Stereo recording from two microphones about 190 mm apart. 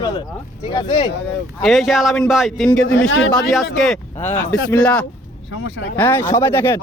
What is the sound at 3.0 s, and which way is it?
Speech, 90° left.